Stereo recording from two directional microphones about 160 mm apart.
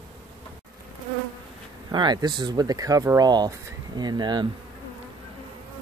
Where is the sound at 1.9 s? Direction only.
30° right (ahead or behind).